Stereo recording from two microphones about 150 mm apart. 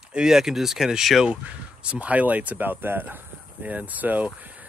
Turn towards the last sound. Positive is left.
turn(degrees=-10)  # may be behind; listen again after turning